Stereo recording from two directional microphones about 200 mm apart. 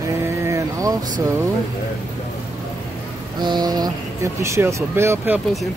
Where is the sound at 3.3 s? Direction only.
20° right (ahead or behind).